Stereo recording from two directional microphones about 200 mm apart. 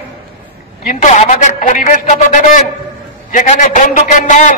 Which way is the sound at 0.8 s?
35° left (ahead or behind).